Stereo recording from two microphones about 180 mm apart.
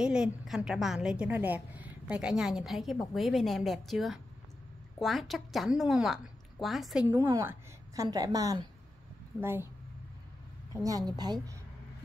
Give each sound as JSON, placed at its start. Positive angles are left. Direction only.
{"t": 0.0, "sound": "a woman's voice", "side_deg": -5}
{"t": 7.2, "sound": "a woman's voice", "side_deg": -15}
{"t": 10.8, "sound": "a woman's voice", "side_deg": -20}